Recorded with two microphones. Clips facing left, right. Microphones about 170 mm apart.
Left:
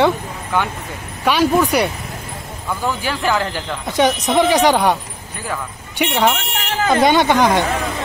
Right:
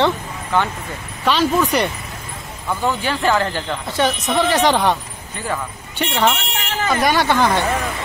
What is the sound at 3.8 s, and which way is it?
Speech, 15° left (ahead or behind).